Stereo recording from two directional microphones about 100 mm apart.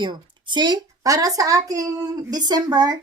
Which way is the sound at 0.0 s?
50° right (ahead or behind).